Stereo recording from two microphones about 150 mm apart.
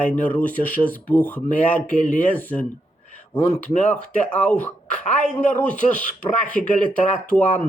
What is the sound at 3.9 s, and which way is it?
Speech, 10° left (ahead or behind).